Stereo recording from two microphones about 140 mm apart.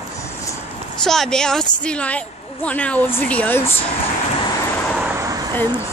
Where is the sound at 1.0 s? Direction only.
5° left (ahead or behind).